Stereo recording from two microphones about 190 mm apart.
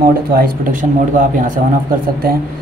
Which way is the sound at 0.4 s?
45° right (ahead or behind).